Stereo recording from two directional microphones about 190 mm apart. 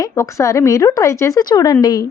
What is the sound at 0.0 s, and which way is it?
Speech, 15° left (ahead or behind).